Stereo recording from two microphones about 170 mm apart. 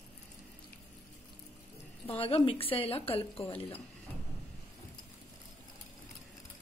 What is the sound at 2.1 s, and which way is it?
A woman's voice, 35° left (ahead or behind).